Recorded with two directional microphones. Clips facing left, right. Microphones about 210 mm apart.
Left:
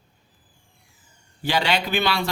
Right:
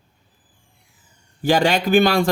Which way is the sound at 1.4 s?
45° right (ahead or behind).